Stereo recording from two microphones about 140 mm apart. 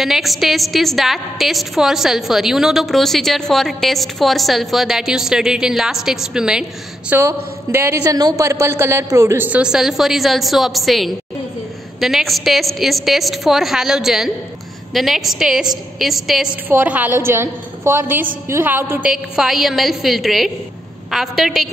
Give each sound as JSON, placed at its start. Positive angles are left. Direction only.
{"t": 0.0, "sound": "a woman's voice", "side_deg": 0}
{"t": 7.1, "sound": "a woman's voice", "side_deg": -15}
{"t": 16.6, "sound": "a woman's voice", "side_deg": -10}
{"t": 19.1, "sound": "a woman's voice", "side_deg": -5}